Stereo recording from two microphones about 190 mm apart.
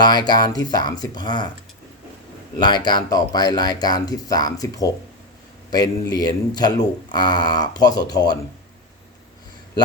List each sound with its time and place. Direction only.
0.0 s speech: 20° left (ahead or behind)
2.6 s speech: 20° left (ahead or behind)